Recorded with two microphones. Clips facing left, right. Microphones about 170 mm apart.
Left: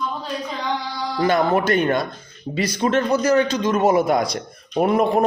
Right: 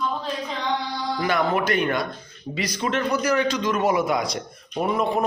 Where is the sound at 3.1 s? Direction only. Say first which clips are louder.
Left 4 dB; 25° left (ahead or behind).